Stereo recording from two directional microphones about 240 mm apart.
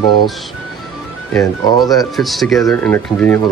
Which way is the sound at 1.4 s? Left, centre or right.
Centre.